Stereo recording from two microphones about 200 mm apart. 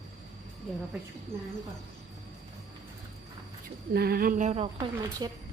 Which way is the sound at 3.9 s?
50° right (ahead or behind).